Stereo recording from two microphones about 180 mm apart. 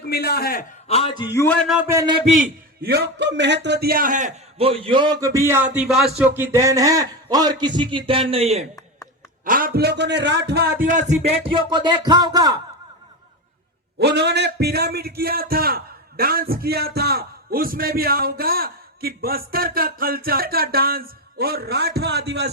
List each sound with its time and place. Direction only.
0.1 s a man's voice: 60° left (ahead or behind)
0.9 s a man's voice: 35° left (ahead or behind)
1.4 s speech: 10° left (ahead or behind)
1.6 s a man's voice: 5° right (ahead or behind)
1.9 s a sound: 15° right (ahead or behind)
2.8 s a man's voice: 65° right (ahead or behind); by 5.1 s 25° right (ahead or behind)
5.2 s a sound: 15° right (ahead or behind)
6.1 s a man's voice: 10° right (ahead or behind); by 8.6 s 35° right (ahead or behind)
9.4 s a man's voice: 50° right (ahead or behind); by 10.7 s 65° right (ahead or behind)
11.5 s a man's voice: 25° right (ahead or behind)
14.0 s a man's voice: 70° right (ahead or behind)